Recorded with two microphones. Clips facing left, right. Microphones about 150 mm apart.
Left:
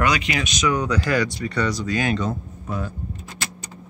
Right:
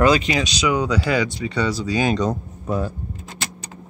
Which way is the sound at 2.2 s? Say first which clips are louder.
Right 4 dB; 35° right (ahead or behind).